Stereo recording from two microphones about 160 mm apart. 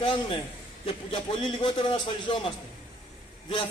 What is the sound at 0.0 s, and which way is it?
A man's voice, 30° left (ahead or behind).